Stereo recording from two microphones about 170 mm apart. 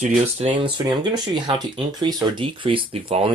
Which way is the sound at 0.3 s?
30° right (ahead or behind).